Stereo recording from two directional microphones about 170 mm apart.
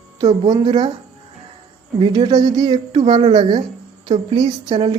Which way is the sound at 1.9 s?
25° right (ahead or behind).